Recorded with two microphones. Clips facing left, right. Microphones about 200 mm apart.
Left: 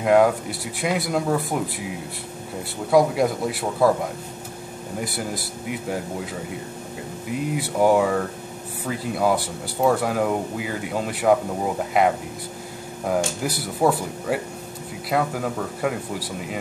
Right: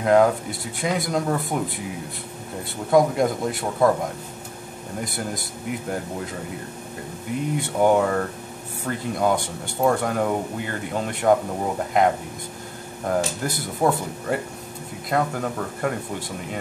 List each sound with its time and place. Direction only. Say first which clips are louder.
0.0 s speech: even; 5° left (ahead or behind)
2.9 s speech: even; 5° left (ahead or behind)
5.0 s speech: left 1 dB; centre (ahead or behind)
7.5 s speech: left 1 dB; 5° left (ahead or behind)
13.1 s speech: left 1 dB; 5° left (ahead or behind)